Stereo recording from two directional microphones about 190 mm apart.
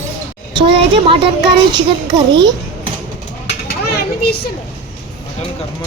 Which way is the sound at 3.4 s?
60° left (ahead or behind).